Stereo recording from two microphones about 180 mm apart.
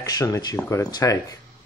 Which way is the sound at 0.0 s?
20° left (ahead or behind).